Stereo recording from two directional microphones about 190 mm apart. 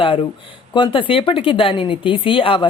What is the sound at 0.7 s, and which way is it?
Speech, 25° left (ahead or behind).